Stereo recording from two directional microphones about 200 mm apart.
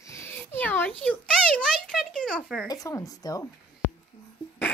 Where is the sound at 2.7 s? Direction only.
15° left (ahead or behind).